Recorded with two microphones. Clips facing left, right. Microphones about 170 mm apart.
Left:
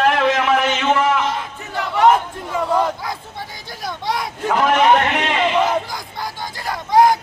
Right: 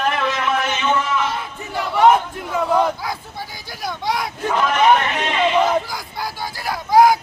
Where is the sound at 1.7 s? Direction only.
10° right (ahead or behind).